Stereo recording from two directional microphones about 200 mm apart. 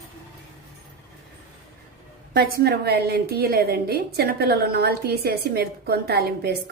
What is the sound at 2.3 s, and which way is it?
A woman's voice, 50° right (ahead or behind).